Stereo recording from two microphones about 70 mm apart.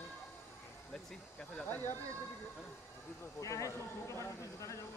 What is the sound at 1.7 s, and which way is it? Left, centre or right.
Speech, left.